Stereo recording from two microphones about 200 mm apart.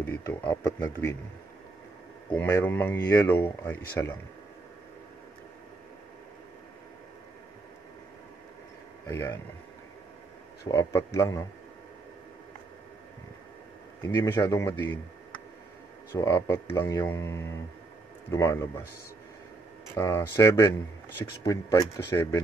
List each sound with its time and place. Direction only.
0.0 s speech: 10° left (ahead or behind)
2.3 s speech: 10° left (ahead or behind)
9.0 s speech: 15° left (ahead or behind)
10.7 s speech: 15° left (ahead or behind)
14.0 s speech: 10° left (ahead or behind)
16.2 s speech: 15° left (ahead or behind)
20.0 s speech: 15° left (ahead or behind)